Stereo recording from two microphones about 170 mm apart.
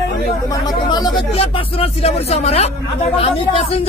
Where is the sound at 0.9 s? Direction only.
25° left (ahead or behind).